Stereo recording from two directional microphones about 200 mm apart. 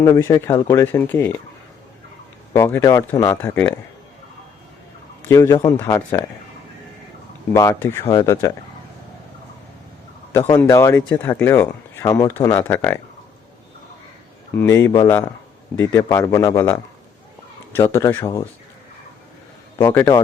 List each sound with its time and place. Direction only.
0.0 s speech: 15° left (ahead or behind)
2.5 s speech: 10° left (ahead or behind)
5.3 s speech: 15° left (ahead or behind)
7.5 s speech: 15° left (ahead or behind)
10.5 s speech: 15° left (ahead or behind)
14.5 s speech: 10° left (ahead or behind)
19.8 s speech: 10° left (ahead or behind)